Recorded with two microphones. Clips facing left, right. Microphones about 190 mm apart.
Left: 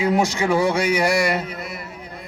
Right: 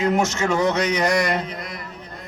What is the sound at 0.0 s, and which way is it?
Speech, 15° left (ahead or behind).